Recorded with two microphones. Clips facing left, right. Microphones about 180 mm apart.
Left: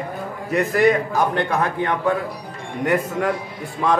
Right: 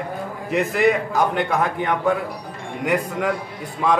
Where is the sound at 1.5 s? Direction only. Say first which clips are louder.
Even; 15° right (ahead or behind).